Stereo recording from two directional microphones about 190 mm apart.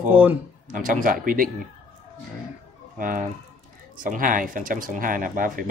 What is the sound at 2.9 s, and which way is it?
Speech, 45° right (ahead or behind).